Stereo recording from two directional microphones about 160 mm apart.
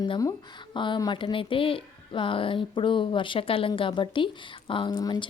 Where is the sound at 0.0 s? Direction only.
25° left (ahead or behind).